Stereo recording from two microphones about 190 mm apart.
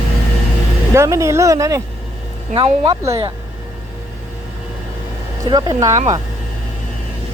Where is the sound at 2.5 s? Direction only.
25° right (ahead or behind).